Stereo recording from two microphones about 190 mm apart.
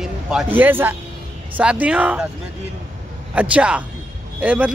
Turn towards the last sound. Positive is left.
turn(degrees=-5)  # may be behind; listen again after turning